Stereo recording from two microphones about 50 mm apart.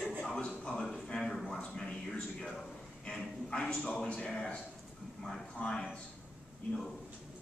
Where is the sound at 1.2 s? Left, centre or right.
Centre.